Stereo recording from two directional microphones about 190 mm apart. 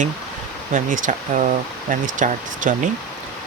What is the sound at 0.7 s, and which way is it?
Speech, 45° right (ahead or behind).